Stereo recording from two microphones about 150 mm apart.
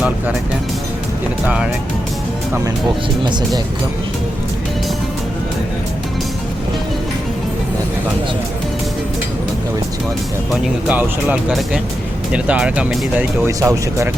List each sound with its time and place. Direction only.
10.5 s speech: 10° right (ahead or behind)
13.6 s speech: 20° right (ahead or behind)